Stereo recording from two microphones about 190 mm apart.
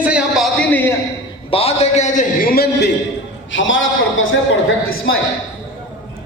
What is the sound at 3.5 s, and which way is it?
Speech, 90° left.